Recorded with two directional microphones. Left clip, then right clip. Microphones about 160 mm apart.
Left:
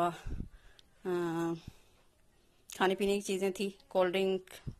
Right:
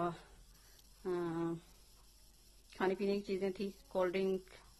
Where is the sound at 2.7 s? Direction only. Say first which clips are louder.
Left 5 dB; 30° left (ahead or behind).